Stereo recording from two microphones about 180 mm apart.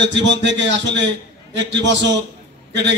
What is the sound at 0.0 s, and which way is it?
A man's voice, 80° right.